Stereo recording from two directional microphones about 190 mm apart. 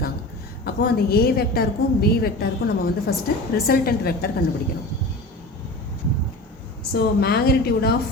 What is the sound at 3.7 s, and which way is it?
Speech, 50° left (ahead or behind).